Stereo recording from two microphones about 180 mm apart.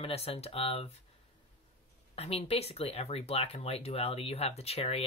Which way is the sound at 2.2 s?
35° left (ahead or behind).